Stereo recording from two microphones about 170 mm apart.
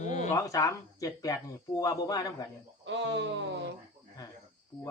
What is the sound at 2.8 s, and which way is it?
Speech, 90° right.